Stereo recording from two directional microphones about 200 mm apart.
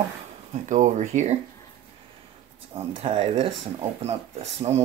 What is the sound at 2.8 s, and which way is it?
Speech, 30° right (ahead or behind).